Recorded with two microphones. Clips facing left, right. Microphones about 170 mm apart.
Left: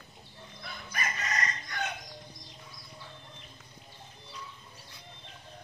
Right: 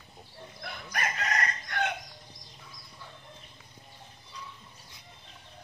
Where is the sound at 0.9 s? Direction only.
65° right (ahead or behind).